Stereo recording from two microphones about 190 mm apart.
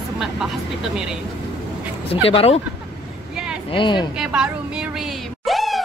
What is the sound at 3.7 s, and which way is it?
Speech, 25° left (ahead or behind).